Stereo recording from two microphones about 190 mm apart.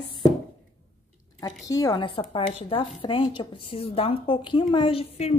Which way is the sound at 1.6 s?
20° left (ahead or behind).